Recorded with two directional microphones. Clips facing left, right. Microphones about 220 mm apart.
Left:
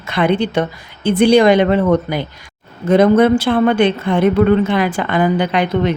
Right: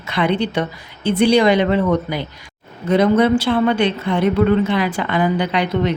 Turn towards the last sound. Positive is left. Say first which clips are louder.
# left 3 dB
turn(degrees=50)  # may be behind; listen again after turning